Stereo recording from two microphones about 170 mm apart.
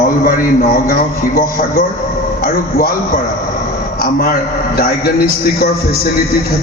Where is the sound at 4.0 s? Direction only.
60° left (ahead or behind).